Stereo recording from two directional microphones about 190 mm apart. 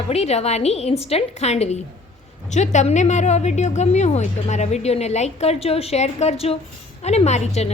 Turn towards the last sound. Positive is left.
turn(degrees=35)  # may be behind; listen again after turning